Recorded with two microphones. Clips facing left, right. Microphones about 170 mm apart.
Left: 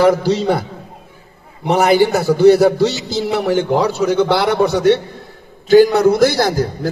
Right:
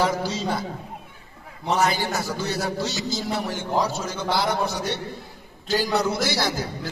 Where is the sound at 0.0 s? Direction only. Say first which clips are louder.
Left 11 dB; 65° left (ahead or behind).